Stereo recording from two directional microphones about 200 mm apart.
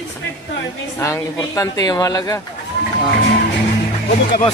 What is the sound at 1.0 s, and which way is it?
Speech, 15° left (ahead or behind).